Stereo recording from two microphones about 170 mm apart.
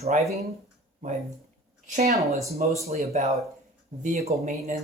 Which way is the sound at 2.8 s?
40° right (ahead or behind).